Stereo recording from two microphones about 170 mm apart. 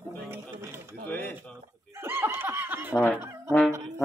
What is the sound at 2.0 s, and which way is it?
Snicker, 15° right (ahead or behind).